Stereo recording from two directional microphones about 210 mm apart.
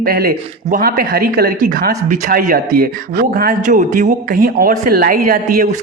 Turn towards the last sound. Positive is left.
turn(degrees=-40)  # may be behind; listen again after turning